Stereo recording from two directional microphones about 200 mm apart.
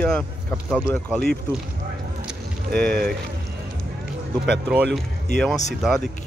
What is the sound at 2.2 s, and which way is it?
Vehicle, 5° left (ahead or behind).